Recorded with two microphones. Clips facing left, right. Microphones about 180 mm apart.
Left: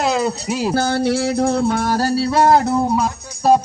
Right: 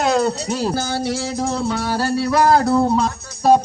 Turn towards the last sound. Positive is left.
turn(degrees=5)  # may be behind; listen again after turning